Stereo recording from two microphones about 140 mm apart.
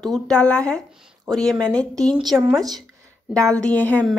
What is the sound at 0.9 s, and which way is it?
Speech, 5° right (ahead or behind).